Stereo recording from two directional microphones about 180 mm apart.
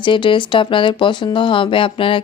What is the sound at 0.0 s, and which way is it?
Speech, 25° left (ahead or behind).